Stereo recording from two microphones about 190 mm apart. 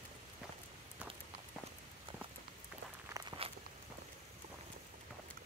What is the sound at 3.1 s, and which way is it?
Walk, 25° right (ahead or behind).